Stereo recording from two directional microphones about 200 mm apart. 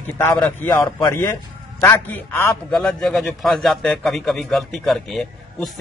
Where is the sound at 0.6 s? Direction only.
15° left (ahead or behind).